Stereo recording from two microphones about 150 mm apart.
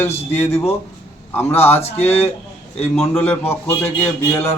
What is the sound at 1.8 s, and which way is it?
Speech, 45° left (ahead or behind).